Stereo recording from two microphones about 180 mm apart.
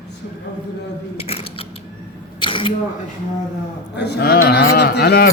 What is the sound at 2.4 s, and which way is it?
Camera, 25° left (ahead or behind).